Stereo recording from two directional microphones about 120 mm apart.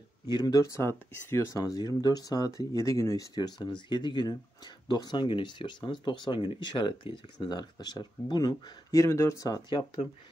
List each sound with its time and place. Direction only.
0.3 s speech: 30° left (ahead or behind)